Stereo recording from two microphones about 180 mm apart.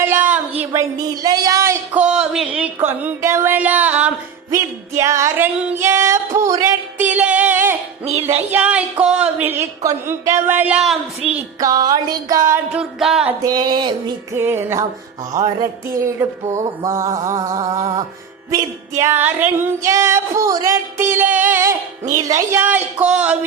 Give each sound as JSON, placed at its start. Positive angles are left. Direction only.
{"t": 0.0, "sound": "a sound", "side_deg": -10}
{"t": 0.6, "sound": "female singing", "side_deg": -15}
{"t": 5.8, "sound": "music", "side_deg": -15}
{"t": 8.0, "sound": "music", "side_deg": -35}
{"t": 8.4, "sound": "female singing", "side_deg": -10}
{"t": 11.6, "sound": "music", "side_deg": -20}
{"t": 12.7, "sound": "music", "side_deg": 0}
{"t": 13.4, "sound": "music", "side_deg": -20}
{"t": 14.3, "sound": "female singing", "side_deg": -15}
{"t": 15.3, "sound": "music", "side_deg": -20}
{"t": 18.5, "sound": "female singing", "side_deg": -15}
{"t": 23.0, "sound": "music", "side_deg": -5}